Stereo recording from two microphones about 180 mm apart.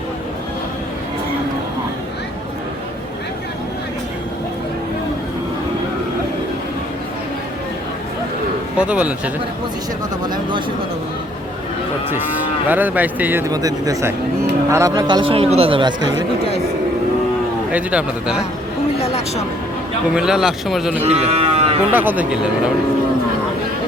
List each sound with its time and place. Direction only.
8.8 s speech: 5° right (ahead or behind)
12.6 s speech: 10° right (ahead or behind)
13.5 s a man's voice: 20° right (ahead or behind)
17.7 s speech: 5° right (ahead or behind)
18.9 s a sound: 35° left (ahead or behind)
20.1 s a man's voice: 5° right (ahead or behind)
21.0 s cattle: 35° right (ahead or behind)
21.9 s speech: 10° right (ahead or behind)